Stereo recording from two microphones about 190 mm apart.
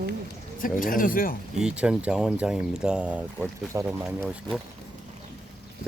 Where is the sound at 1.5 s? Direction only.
5° right (ahead or behind).